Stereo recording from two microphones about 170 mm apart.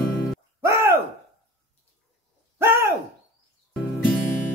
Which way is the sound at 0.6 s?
15° right (ahead or behind).